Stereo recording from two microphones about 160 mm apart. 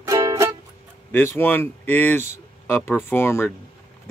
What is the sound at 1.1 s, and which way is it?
Speech, 15° left (ahead or behind).